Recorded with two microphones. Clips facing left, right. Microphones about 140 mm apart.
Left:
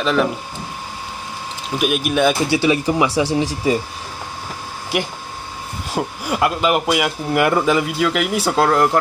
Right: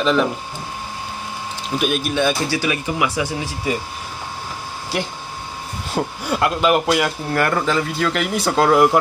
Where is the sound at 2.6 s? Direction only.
25° left (ahead or behind).